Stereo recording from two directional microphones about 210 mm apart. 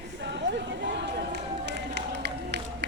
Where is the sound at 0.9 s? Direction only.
55° right (ahead or behind).